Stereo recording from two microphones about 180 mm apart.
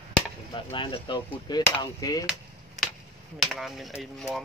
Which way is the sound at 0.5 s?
25° left (ahead or behind).